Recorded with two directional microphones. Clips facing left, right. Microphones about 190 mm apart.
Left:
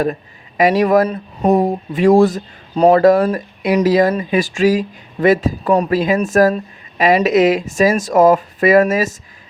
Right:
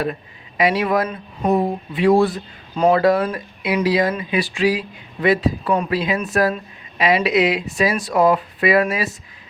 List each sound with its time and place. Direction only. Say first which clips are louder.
0.0 s speech: left 5 dB; 45° left (ahead or behind)